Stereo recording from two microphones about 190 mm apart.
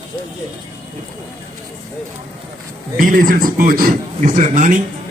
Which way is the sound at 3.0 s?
45° right (ahead or behind).